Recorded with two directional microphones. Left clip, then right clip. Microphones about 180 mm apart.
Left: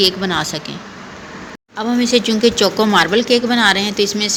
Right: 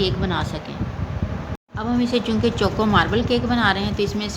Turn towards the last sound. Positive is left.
turn(degrees=15)  # may be behind; listen again after turning